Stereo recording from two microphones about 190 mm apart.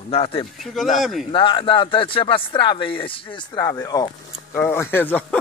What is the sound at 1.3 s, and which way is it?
Speech, 25° left (ahead or behind).